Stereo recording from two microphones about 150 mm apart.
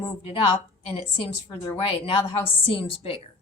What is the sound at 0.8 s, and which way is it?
A woman's voice, 40° left (ahead or behind).